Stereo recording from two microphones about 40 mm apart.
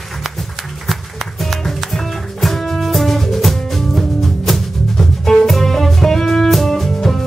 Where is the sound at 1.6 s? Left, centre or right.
Centre.